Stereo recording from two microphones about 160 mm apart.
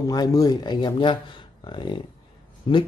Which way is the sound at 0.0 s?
25° left (ahead or behind).